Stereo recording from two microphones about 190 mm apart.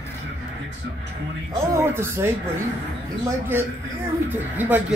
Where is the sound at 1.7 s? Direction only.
15° right (ahead or behind).